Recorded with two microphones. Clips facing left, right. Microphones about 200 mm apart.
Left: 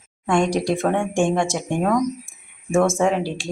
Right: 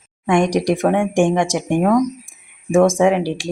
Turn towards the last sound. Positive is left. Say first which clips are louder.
# right 5 dB
turn(degrees=-10)  # may be behind; listen again after turning